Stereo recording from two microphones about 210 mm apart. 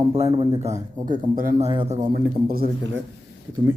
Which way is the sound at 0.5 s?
30° right (ahead or behind).